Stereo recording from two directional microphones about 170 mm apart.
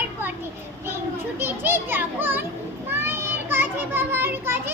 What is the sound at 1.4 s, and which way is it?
Children playing, 15° right (ahead or behind).